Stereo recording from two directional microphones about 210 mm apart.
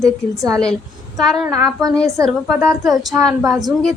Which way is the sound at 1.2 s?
Centre (ahead or behind).